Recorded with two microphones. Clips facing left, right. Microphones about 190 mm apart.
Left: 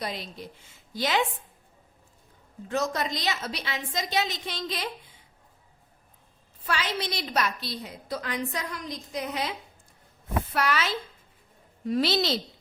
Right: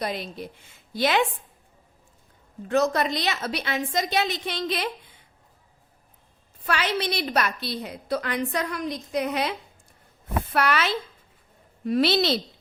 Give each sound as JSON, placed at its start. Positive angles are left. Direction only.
{"t": 0.0, "sound": "a woman's voice", "side_deg": -55}
{"t": 2.6, "sound": "a woman's voice", "side_deg": -65}
{"t": 6.7, "sound": "a woman's voice", "side_deg": -65}